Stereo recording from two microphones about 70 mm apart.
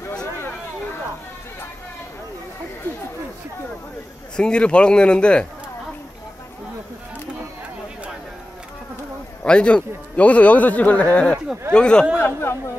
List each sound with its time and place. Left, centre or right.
4.4 s speech: centre
9.4 s speech: centre
12.2 s speech: left